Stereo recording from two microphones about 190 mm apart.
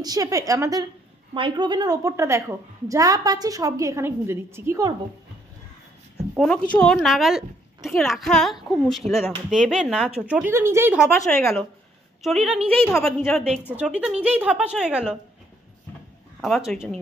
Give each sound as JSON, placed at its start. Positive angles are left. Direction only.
{"t": 0.0, "sound": "a woman's voice", "side_deg": -20}
{"t": 6.3, "sound": "a woman's voice", "side_deg": 5}
{"t": 11.2, "sound": "a woman's voice", "side_deg": 5}
{"t": 16.3, "sound": "a woman's voice", "side_deg": 0}